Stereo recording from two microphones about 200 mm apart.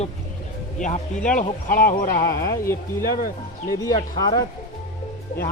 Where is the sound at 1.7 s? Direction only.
45° left (ahead or behind).